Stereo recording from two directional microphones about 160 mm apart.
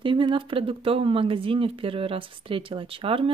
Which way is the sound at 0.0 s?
30° right (ahead or behind).